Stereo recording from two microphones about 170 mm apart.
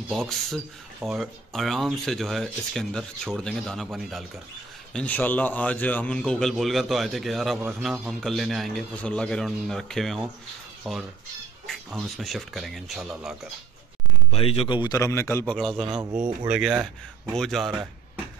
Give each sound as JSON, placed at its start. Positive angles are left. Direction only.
{"t": 0.1, "sound": "speech", "side_deg": 0}
{"t": 14.3, "sound": "speech", "side_deg": 35}